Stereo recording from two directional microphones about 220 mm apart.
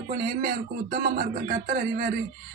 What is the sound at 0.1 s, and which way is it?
A man's voice, 40° right (ahead or behind).